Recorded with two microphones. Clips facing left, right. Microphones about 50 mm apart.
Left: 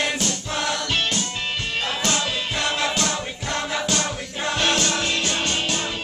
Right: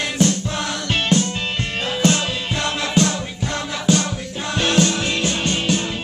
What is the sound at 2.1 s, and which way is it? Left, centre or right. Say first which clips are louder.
Music: right 3 dB; centre.